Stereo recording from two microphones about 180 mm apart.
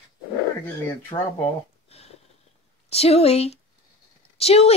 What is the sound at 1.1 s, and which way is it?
Speech, 30° left (ahead or behind).